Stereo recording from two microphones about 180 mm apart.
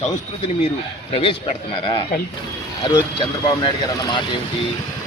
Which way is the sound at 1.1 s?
30° left (ahead or behind).